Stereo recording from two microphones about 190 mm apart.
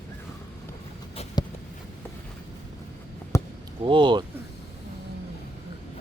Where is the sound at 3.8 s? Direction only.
25° right (ahead or behind).